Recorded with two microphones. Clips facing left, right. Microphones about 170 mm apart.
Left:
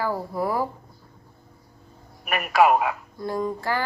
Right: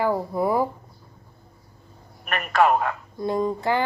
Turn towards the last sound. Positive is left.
turn(degrees=-20)  # may be behind; listen again after turning